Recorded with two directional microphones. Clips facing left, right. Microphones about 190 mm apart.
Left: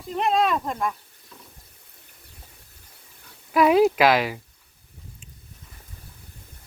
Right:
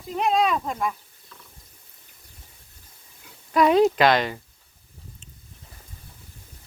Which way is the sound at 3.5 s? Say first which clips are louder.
Even; 5° left (ahead or behind).